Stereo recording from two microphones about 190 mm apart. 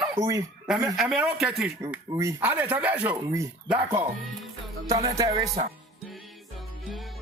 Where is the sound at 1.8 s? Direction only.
15° right (ahead or behind).